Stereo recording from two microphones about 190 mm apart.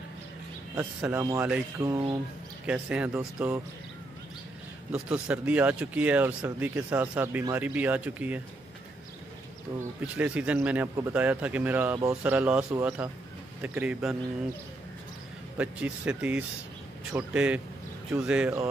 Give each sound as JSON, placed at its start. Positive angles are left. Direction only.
{"t": 0.7, "sound": "speech", "side_deg": -10}
{"t": 4.9, "sound": "speech", "side_deg": -5}
{"t": 10.0, "sound": "speech", "side_deg": -5}
{"t": 15.5, "sound": "speech", "side_deg": -5}